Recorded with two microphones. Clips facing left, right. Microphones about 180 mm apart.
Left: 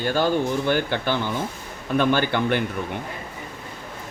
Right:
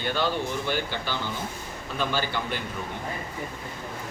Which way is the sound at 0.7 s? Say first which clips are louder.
Left 7 dB; 55° left (ahead or behind).